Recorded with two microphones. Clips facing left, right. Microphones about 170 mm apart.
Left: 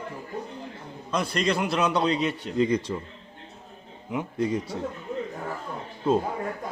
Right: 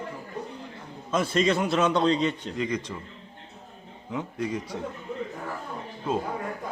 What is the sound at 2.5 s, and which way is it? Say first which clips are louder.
Speech: left 6 dB; 30° left (ahead or behind).